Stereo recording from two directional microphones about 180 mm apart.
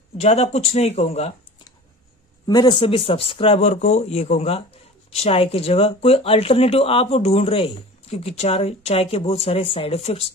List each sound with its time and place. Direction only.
0.2 s speech: 35° left (ahead or behind)
2.4 s speech: 25° left (ahead or behind)